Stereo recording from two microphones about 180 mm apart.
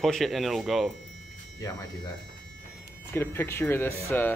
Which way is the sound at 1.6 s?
20° left (ahead or behind).